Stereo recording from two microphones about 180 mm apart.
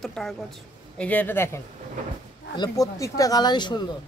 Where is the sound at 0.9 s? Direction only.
10° left (ahead or behind); by 3.8 s 25° left (ahead or behind).